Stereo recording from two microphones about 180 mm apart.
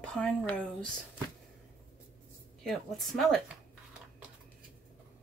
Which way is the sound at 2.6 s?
Centre (ahead or behind).